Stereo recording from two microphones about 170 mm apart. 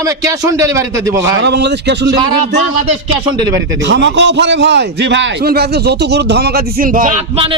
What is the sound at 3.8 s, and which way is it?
A man's voice, 90° right.